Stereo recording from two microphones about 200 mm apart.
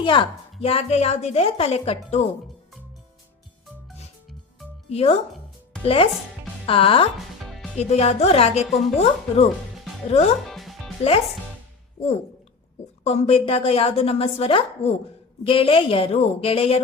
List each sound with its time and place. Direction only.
0.0 s a woman's voice: 25° left (ahead or behind)
4.9 s a woman's voice: 30° left (ahead or behind)
7.4 s music: centre (ahead or behind)
7.8 s speech: 35° left (ahead or behind)
10.4 s music: centre (ahead or behind)
13.1 s a woman's voice: 30° left (ahead or behind)